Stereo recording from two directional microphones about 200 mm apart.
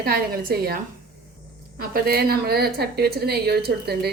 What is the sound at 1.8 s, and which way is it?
A woman's voice, 50° right (ahead or behind).